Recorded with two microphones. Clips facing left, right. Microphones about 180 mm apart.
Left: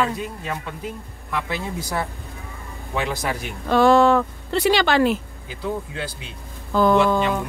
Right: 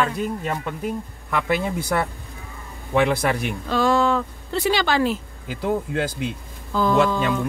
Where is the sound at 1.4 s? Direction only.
60° right (ahead or behind).